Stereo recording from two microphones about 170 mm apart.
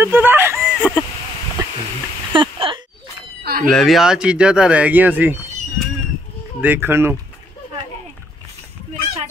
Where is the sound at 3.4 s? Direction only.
60° right (ahead or behind).